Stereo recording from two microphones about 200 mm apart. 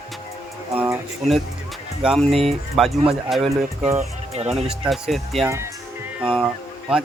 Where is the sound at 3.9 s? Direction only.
30° right (ahead or behind).